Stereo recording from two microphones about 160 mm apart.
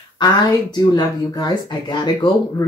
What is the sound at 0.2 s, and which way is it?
Speech, 25° left (ahead or behind).